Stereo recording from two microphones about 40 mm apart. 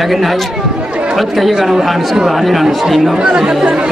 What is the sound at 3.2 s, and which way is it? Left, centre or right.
Speech, centre.